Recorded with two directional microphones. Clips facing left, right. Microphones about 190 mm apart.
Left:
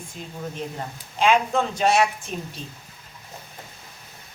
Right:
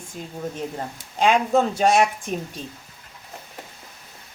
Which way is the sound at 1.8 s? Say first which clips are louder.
Right 2 dB; 50° right (ahead or behind).